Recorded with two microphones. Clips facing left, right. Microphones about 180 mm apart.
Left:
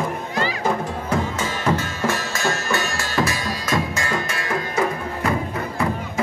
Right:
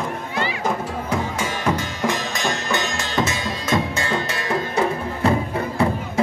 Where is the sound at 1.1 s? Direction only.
10° right (ahead or behind).